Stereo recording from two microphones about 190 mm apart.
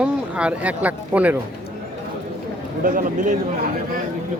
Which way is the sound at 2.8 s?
45° right (ahead or behind).